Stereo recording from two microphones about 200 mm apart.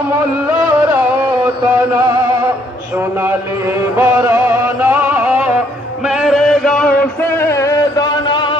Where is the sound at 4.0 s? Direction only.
15° right (ahead or behind).